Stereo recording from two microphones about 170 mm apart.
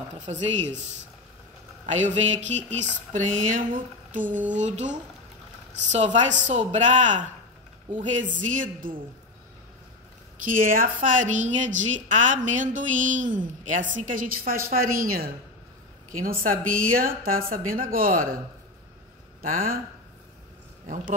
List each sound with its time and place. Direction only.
0.3 s speech: 40° right (ahead or behind)
1.9 s a woman's voice: 45° right (ahead or behind)
10.3 s a woman's voice: 50° right (ahead or behind)
19.4 s a woman's voice: 55° right (ahead or behind)